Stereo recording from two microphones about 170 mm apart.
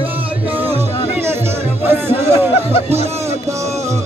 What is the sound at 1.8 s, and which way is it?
Music, 15° right (ahead or behind).